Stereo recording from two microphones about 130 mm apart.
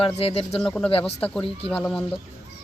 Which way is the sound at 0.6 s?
10° left (ahead or behind).